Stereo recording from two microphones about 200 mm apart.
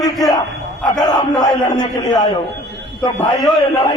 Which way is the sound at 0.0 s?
20° left (ahead or behind).